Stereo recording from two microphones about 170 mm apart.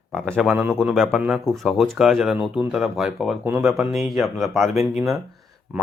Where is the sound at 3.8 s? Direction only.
Centre (ahead or behind).